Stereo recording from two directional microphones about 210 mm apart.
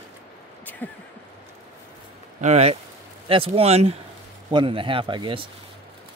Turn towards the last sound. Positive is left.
turn(degrees=-25)  # may be behind; listen again after turning